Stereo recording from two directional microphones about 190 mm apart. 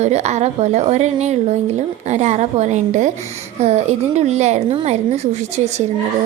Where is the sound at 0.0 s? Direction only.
35° right (ahead or behind).